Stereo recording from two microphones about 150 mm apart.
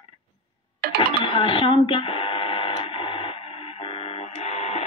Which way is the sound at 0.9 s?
35° left (ahead or behind).